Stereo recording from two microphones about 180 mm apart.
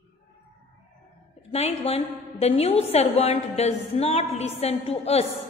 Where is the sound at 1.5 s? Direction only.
35° left (ahead or behind).